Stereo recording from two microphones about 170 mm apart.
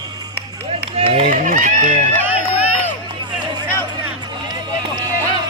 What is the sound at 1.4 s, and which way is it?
Sheep, 50° right (ahead or behind).